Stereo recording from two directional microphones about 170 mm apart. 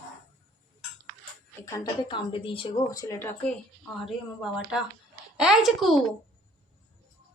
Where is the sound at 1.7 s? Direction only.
25° left (ahead or behind).